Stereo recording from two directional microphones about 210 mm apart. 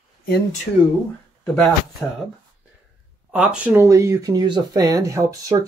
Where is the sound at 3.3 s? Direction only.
5° right (ahead or behind).